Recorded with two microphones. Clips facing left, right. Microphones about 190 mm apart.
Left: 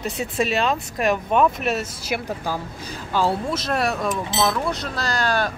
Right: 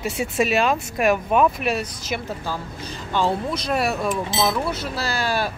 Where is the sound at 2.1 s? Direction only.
15° left (ahead or behind).